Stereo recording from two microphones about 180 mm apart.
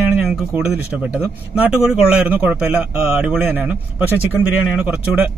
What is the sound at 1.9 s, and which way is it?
A man's voice, 5° right (ahead or behind).